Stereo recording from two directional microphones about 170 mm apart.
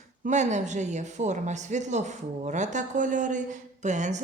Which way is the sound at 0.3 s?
45° right (ahead or behind).